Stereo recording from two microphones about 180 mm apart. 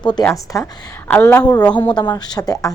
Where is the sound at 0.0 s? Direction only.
25° left (ahead or behind).